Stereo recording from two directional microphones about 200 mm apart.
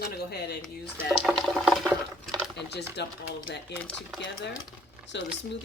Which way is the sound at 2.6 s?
55° left (ahead or behind).